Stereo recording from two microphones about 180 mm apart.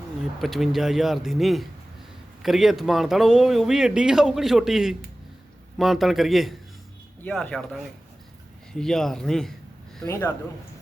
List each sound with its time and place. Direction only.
0.3 s speech: centre (ahead or behind)